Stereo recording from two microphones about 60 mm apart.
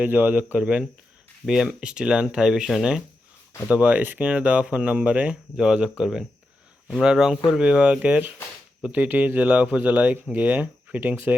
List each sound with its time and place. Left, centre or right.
0.0 s speech: right; by 2.6 s centre
3.7 s speech: right
5.5 s speech: centre
7.7 s speech: right